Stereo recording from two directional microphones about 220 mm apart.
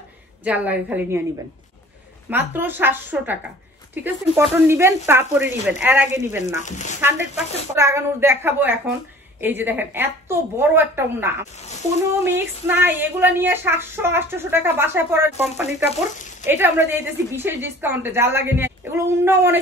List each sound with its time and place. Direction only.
0.4 s speech: 5° right (ahead or behind)
2.2 s speech: 10° right (ahead or behind)
6.6 s speech: 35° left (ahead or behind)
7.7 s speech: 10° right (ahead or behind)